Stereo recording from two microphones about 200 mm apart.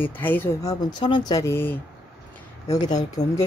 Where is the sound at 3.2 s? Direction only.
35° left (ahead or behind).